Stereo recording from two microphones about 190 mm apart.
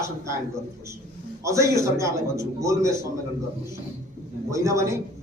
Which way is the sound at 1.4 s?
15° right (ahead or behind).